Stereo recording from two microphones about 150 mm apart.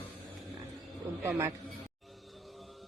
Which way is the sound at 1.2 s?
20° right (ahead or behind).